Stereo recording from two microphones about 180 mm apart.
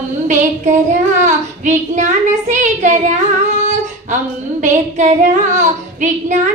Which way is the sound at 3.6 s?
40° right (ahead or behind).